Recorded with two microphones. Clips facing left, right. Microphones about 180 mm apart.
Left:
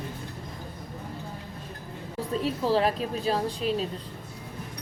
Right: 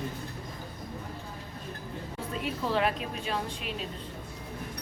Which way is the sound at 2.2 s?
35° left (ahead or behind).